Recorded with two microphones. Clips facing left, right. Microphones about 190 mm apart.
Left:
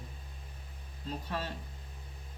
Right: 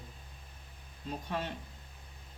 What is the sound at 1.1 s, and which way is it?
Speech, 15° right (ahead or behind).